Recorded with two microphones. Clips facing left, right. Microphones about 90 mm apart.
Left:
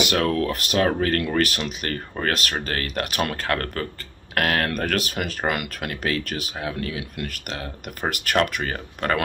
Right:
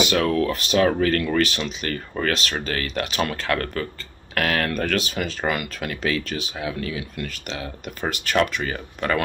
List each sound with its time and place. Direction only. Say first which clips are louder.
0.1 s speech: right 1 dB; 45° left (ahead or behind)
1.4 s speech: right 1 dB; 55° left (ahead or behind)